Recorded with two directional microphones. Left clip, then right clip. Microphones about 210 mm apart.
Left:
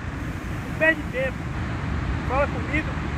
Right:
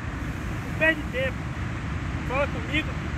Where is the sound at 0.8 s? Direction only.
15° right (ahead or behind).